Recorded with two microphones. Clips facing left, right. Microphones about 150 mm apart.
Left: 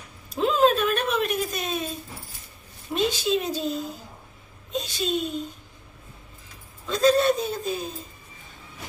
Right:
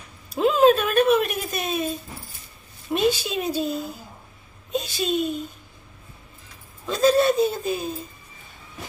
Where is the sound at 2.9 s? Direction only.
5° right (ahead or behind).